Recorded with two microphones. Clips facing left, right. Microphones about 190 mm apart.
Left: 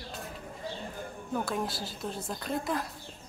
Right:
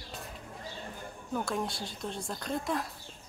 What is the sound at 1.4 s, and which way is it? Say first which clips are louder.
Speech: even; centre (ahead or behind).